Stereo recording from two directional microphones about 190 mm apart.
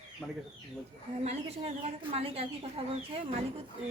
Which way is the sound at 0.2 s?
5° left (ahead or behind).